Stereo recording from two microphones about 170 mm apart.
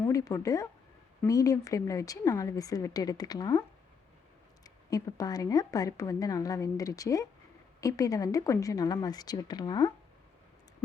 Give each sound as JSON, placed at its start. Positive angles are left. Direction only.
{"t": 0.0, "sound": "a woman's voice", "side_deg": 20}
{"t": 4.6, "sound": "a woman's voice", "side_deg": 20}